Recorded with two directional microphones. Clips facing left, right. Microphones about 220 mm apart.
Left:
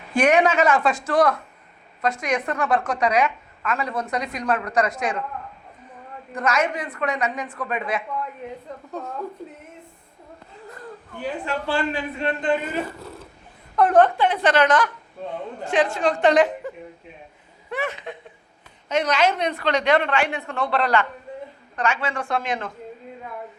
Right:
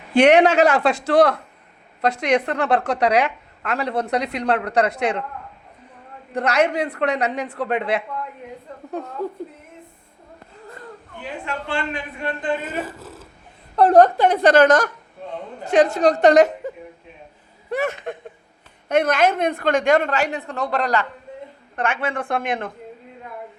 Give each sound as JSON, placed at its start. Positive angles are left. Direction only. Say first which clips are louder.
{"t": 0.1, "sound": "a woman's voice", "louder": "right 5 dB", "side_deg": -70}
{"t": 6.3, "sound": "a woman's voice", "louder": "right 4 dB", "side_deg": -65}
{"t": 11.2, "sound": "a man's voice", "louder": "left 3 dB", "side_deg": 35}
{"t": 12.7, "sound": "speech", "louder": "left 1 dB", "side_deg": -5}
{"t": 13.7, "sound": "a woman's voice", "louder": "right 3 dB", "side_deg": -35}
{"t": 17.7, "sound": "a woman's voice", "louder": "right 5 dB", "side_deg": -45}
{"t": 21.8, "sound": "a woman's voice", "louder": "right 1 dB", "side_deg": -55}